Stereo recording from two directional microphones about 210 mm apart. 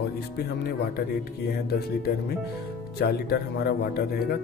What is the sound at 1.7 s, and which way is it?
Speech, 50° left (ahead or behind).